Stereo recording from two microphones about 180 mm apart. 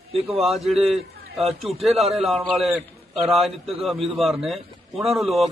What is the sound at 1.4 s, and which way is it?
Speech, 35° right (ahead or behind).